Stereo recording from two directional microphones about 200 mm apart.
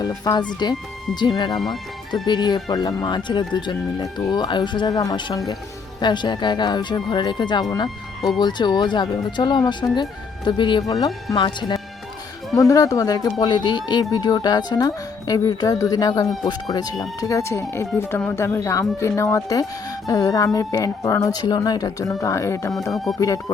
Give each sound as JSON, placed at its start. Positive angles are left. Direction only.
{"t": 0.0, "sound": "speech", "side_deg": 20}
{"t": 1.6, "sound": "speech", "side_deg": 0}
{"t": 2.2, "sound": "speech", "side_deg": 20}
{"t": 22.9, "sound": "music", "side_deg": 0}